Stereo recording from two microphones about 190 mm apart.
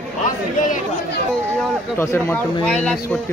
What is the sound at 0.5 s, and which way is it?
Speech, 40° left (ahead or behind).